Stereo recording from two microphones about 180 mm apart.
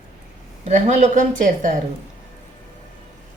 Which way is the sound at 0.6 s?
40° right (ahead or behind).